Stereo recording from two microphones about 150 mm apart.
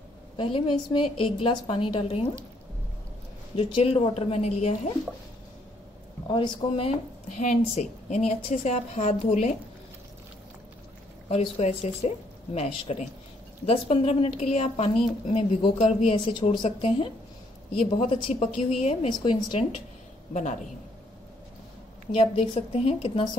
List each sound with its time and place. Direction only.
0.4 s a woman's voice: 35° left (ahead or behind)
3.5 s speech: 40° left (ahead or behind)
6.2 s speech: 35° left (ahead or behind)
11.2 s a woman's voice: 45° left (ahead or behind)
18.3 s speech: 45° left (ahead or behind)
19.2 s a woman's voice: 30° left (ahead or behind)
22.1 s a woman's voice: 40° left (ahead or behind)